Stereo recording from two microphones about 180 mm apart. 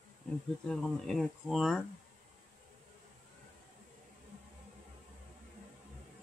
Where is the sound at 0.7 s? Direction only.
Centre (ahead or behind).